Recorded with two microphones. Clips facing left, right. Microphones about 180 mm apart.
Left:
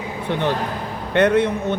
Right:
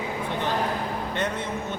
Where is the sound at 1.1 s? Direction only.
70° left (ahead or behind).